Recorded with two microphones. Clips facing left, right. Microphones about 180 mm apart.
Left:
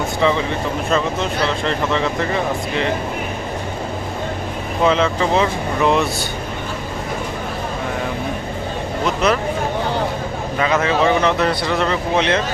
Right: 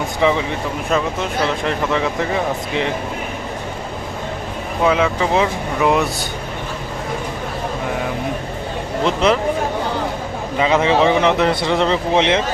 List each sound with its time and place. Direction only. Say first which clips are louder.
0.2 s speech: right 1 dB; 15° right (ahead or behind)
1.6 s speech: even; 10° right (ahead or behind)
4.8 s speech: even; 10° right (ahead or behind)
9.0 s speech: right 2 dB; 25° right (ahead or behind)
10.6 s speech: right 2 dB; 20° right (ahead or behind)